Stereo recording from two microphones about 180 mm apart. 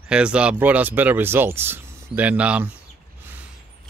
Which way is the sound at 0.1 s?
5° right (ahead or behind).